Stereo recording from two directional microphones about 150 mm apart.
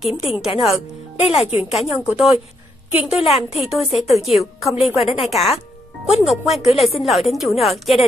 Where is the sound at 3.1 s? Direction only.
40° left (ahead or behind).